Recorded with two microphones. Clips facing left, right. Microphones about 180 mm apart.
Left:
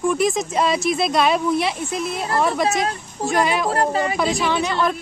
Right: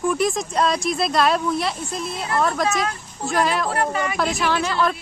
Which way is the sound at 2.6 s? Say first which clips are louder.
Left 2 dB; 35° left (ahead or behind).